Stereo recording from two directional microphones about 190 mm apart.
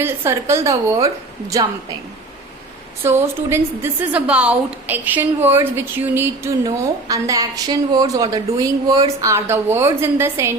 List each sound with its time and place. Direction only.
0.0 s a woman's voice: 15° right (ahead or behind)
3.0 s a woman's voice: 10° right (ahead or behind)